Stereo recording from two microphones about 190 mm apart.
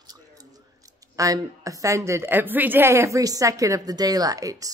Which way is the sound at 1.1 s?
20° right (ahead or behind).